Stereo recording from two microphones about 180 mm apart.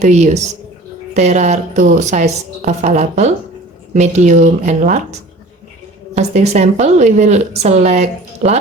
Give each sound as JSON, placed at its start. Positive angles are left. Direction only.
{"t": 0.0, "sound": "speech", "side_deg": -40}
{"t": 6.1, "sound": "speech", "side_deg": -35}